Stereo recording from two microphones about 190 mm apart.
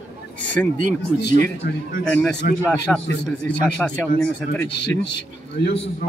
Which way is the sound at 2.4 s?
45° left (ahead or behind).